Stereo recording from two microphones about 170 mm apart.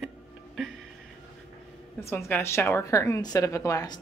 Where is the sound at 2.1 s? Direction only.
15° left (ahead or behind).